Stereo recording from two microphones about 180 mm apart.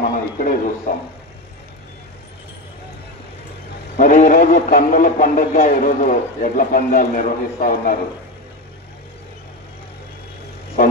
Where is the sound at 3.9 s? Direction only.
50° left (ahead or behind).